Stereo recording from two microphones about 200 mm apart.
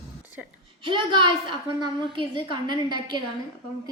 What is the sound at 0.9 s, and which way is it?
A woman's voice, 25° right (ahead or behind).